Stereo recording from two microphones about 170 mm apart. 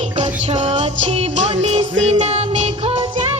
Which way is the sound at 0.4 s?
40° right (ahead or behind).